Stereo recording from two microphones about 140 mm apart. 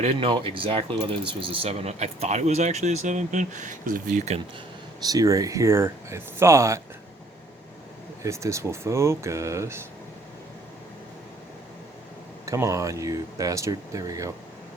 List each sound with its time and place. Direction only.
0.0 s speech: 40° right (ahead or behind); by 4.2 s 75° right (ahead or behind)
5.0 s speech: 25° right (ahead or behind)
8.2 s speech: 20° right (ahead or behind)
12.5 s speech: 20° right (ahead or behind)